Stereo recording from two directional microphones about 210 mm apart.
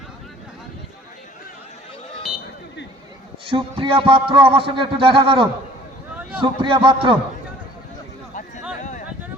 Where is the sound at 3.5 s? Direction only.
25° right (ahead or behind).